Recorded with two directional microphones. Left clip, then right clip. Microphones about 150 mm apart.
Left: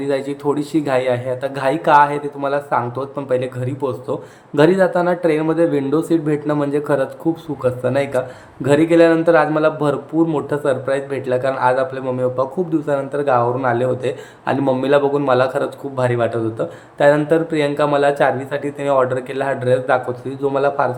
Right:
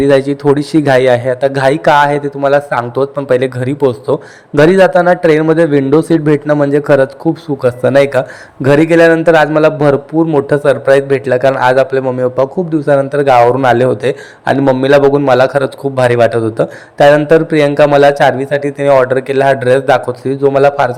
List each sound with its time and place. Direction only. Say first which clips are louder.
0.0 s a man's voice: right 11 dB; 45° right (ahead or behind)
12.0 s a man's voice: right 7 dB; 35° right (ahead or behind)